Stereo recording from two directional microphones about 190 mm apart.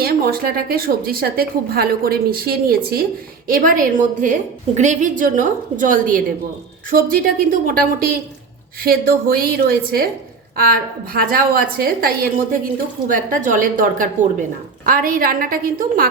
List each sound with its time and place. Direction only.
0.0 s a woman's voice: 55° right (ahead or behind)